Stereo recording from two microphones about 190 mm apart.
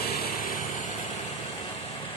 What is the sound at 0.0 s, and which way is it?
Vehicle, 55° left (ahead or behind).